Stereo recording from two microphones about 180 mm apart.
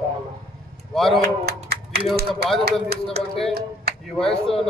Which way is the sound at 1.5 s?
60° right (ahead or behind).